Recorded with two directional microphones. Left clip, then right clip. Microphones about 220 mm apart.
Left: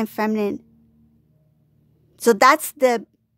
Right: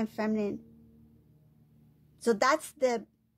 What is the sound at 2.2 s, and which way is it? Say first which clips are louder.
Speech: left 12 dB; 35° left (ahead or behind).